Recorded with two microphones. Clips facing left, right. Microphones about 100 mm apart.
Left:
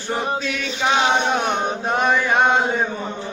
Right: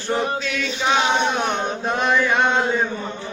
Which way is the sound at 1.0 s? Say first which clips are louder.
Left 2 dB; 25° left (ahead or behind).